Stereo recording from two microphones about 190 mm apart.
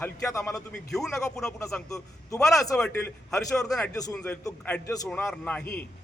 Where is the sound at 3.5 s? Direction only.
5° left (ahead or behind).